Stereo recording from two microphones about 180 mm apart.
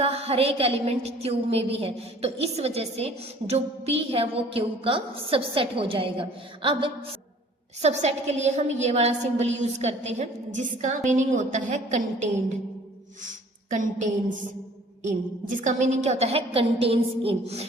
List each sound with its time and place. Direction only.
0.0 s a woman's voice: 35° right (ahead or behind)
8.0 s a woman's voice: 40° right (ahead or behind)